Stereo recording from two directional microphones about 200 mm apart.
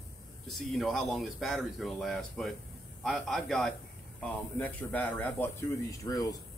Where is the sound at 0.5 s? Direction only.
Centre (ahead or behind).